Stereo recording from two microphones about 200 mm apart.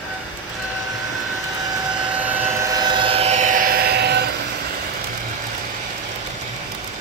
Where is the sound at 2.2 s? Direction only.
10° right (ahead or behind); by 4.2 s 55° right (ahead or behind).